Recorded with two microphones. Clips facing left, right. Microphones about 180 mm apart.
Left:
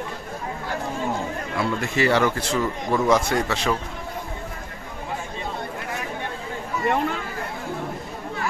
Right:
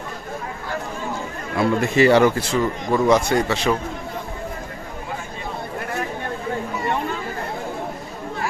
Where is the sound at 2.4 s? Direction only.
Centre (ahead or behind).